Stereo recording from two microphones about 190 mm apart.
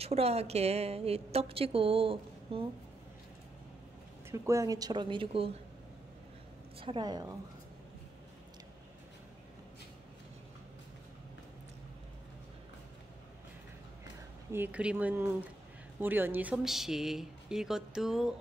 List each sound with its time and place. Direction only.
0.0 s a woman's voice: 35° right (ahead or behind)
4.3 s speech: 15° right (ahead or behind)
6.8 s speech: 25° right (ahead or behind)
14.5 s speech: 10° right (ahead or behind)